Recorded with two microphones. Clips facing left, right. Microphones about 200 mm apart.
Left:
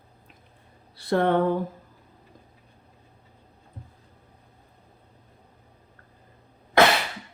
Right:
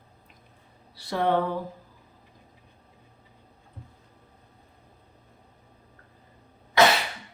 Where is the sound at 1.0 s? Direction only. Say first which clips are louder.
Left 3 dB; 55° left (ahead or behind).